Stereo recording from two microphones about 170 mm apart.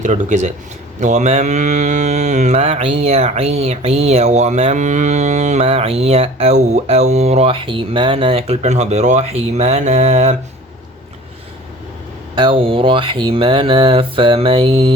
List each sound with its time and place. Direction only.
0.0 s speech: 45° right (ahead or behind)
0.9 s mantra: 45° right (ahead or behind)
12.3 s mantra: 30° right (ahead or behind)